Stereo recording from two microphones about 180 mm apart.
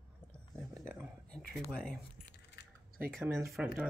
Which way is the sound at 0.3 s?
5° left (ahead or behind).